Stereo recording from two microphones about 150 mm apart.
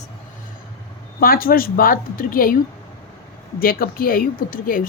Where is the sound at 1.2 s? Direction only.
75° left (ahead or behind).